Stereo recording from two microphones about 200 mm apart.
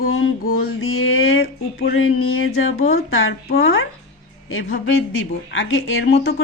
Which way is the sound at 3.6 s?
80° left.